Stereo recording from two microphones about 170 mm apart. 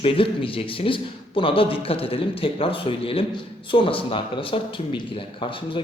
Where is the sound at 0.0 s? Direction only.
30° left (ahead or behind).